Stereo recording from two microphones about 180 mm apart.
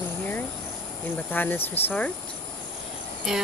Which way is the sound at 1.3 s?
10° left (ahead or behind).